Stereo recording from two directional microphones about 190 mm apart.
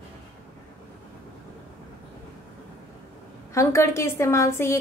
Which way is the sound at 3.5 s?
15° left (ahead or behind).